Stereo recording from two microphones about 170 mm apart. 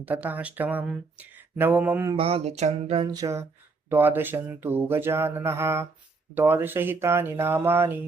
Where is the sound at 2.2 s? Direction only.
35° right (ahead or behind).